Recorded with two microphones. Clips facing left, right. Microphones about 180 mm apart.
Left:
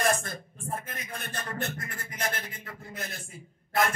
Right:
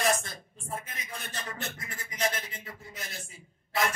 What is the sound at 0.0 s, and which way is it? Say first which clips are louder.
Speech: left 1 dB; 55° left (ahead or behind).